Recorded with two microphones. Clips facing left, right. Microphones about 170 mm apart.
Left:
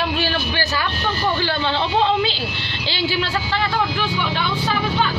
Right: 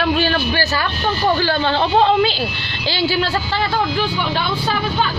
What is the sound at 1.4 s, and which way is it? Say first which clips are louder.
Speech: right 4 dB; 45° right (ahead or behind).